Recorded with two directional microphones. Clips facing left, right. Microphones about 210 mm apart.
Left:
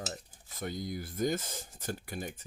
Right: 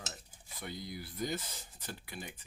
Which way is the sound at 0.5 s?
45° left (ahead or behind).